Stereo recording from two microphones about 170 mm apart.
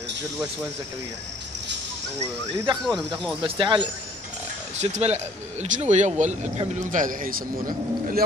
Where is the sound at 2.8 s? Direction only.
Centre (ahead or behind).